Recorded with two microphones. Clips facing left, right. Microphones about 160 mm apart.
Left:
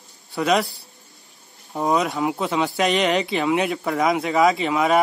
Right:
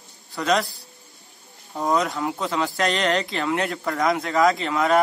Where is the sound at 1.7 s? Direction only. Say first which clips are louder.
Left 2 dB; 20° left (ahead or behind).